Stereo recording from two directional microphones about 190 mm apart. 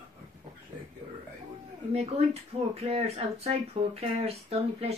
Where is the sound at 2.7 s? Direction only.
30° right (ahead or behind).